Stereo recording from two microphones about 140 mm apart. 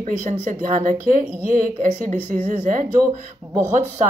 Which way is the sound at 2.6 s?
60° right (ahead or behind).